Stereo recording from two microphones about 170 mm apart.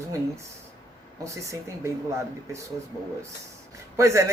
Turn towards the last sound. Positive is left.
turn(degrees=-15)  # may be behind; listen again after turning